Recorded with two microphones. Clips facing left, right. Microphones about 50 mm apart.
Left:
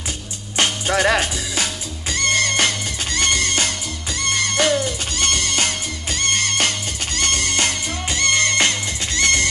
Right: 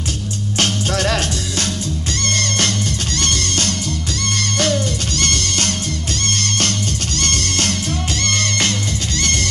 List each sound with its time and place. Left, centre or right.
0.6 s music: centre